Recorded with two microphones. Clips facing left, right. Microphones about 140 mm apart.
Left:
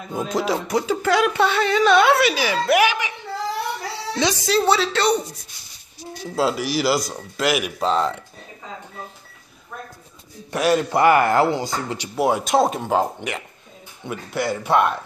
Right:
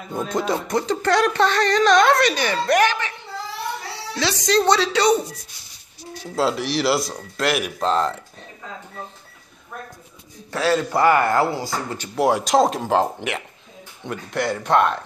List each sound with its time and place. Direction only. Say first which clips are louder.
0.1 s music: even; 5° left (ahead or behind)
4.1 s a woman's voice: left 3 dB; 20° left (ahead or behind)
4.4 s speech: right 3 dB; 5° left (ahead or behind)
6.3 s speech: even; 5° left (ahead or behind)
10.5 s a man's voice: left 1 dB; 15° left (ahead or behind)
12.2 s speech: right 1 dB; centre (ahead or behind)